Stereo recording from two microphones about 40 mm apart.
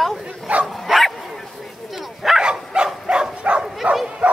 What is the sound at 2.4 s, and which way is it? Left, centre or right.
Dog, right.